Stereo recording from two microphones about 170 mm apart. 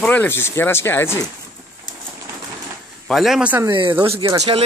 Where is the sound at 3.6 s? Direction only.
30° right (ahead or behind).